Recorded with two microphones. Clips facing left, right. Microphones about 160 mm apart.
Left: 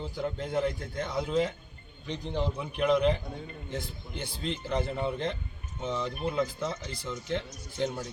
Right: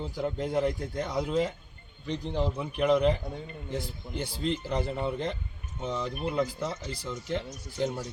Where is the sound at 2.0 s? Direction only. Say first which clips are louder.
Right 3 dB; 35° right (ahead or behind).